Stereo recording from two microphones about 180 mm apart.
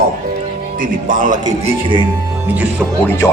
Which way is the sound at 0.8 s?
50° right (ahead or behind).